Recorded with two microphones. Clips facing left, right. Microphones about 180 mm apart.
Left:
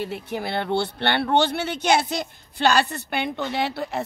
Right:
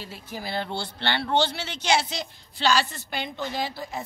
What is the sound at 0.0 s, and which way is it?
Speech, 60° left (ahead or behind).